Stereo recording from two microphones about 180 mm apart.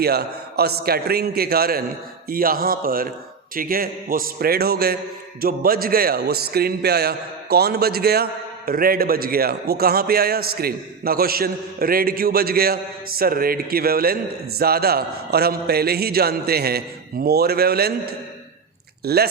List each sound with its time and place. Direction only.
0.0 s a man's voice: 60° right (ahead or behind)